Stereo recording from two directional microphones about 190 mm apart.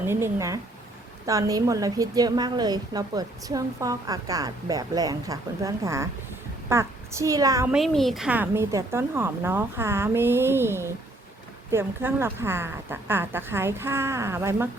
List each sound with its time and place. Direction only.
0.0 s a woman's voice: 15° right (ahead or behind)
7.7 s a woman's voice: centre (ahead or behind)